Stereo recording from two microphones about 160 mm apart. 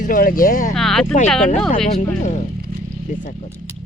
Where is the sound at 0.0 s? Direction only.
60° left (ahead or behind).